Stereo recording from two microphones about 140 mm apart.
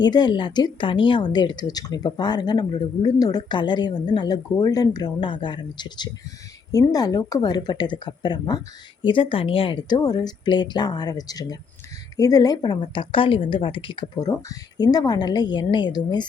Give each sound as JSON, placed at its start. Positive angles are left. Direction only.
{"t": 0.0, "sound": "a woman's voice", "side_deg": 30}